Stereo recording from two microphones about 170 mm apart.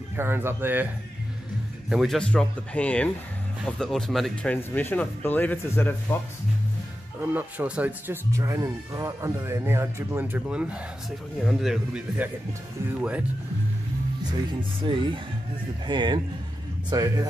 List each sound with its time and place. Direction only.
0.2 s speech: 15° right (ahead or behind)
1.9 s speech: centre (ahead or behind)
7.2 s speech: 10° right (ahead or behind)
14.8 s speech: 30° right (ahead or behind)